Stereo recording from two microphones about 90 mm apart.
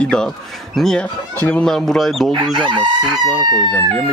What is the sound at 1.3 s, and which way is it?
Speech, 20° left (ahead or behind).